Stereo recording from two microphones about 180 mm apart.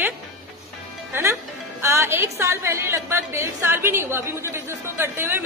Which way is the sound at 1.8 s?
15° right (ahead or behind).